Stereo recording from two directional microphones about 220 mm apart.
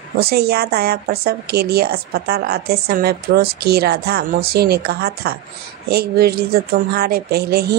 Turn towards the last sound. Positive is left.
turn(degrees=-45)  # may be behind; listen again after turning